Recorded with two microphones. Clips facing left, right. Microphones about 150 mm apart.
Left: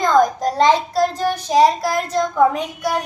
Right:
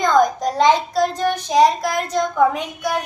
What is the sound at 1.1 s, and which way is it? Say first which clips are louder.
Child singing: even; 30° left (ahead or behind).